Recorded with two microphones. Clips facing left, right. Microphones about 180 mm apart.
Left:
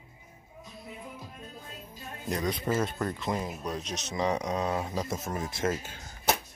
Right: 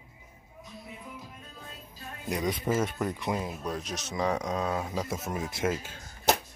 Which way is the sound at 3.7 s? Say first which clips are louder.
Even; 20° left (ahead or behind).